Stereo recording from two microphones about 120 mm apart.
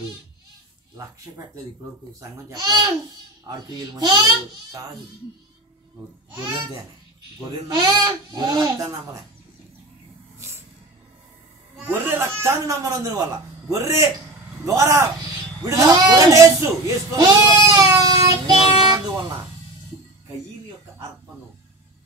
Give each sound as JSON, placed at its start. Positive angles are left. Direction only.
{"t": 2.1, "sound": "speech", "side_deg": -30}
{"t": 7.3, "sound": "speech", "side_deg": -35}
{"t": 10.4, "sound": "music", "side_deg": -25}
{"t": 11.8, "sound": "a man's voice", "side_deg": -15}